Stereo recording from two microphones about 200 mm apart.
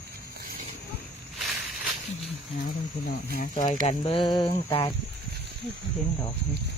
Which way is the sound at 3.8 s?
25° left (ahead or behind).